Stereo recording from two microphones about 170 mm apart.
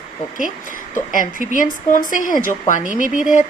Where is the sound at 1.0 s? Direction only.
50° left (ahead or behind).